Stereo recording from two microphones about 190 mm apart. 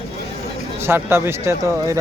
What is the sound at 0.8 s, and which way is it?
Speech, 10° right (ahead or behind).